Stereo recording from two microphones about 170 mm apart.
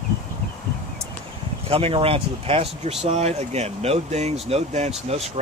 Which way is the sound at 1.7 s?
35° right (ahead or behind).